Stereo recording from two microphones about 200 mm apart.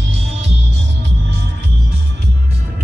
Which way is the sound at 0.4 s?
60° right (ahead or behind).